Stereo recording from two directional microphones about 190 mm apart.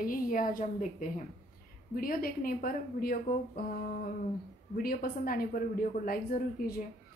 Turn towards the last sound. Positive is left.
turn(degrees=50)  # may be behind; listen again after turning